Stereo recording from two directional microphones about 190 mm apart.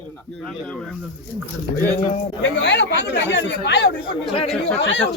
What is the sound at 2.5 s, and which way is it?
Speech, 65° left (ahead or behind).